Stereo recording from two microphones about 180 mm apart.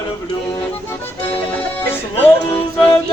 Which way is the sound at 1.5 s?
10° left (ahead or behind).